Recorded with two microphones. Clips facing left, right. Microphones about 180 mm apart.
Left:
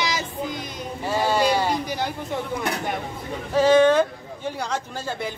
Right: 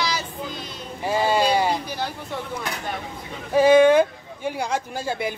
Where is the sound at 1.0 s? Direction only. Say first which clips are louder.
Right 1 dB; 15° right (ahead or behind).